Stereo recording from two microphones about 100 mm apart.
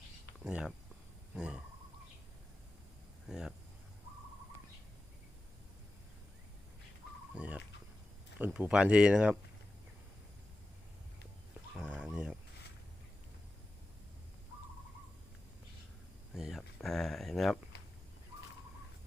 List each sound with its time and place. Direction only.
0.4 s speech: 5° right (ahead or behind)
3.2 s speech: 5° right (ahead or behind)
7.3 s speech: 15° right (ahead or behind)
11.8 s dog: 10° right (ahead or behind)
16.3 s speech: 5° right (ahead or behind)